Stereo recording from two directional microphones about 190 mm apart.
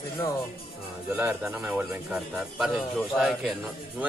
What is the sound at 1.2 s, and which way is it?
A man's voice, 10° right (ahead or behind).